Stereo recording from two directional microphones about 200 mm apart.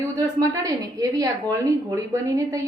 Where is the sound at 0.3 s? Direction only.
15° right (ahead or behind).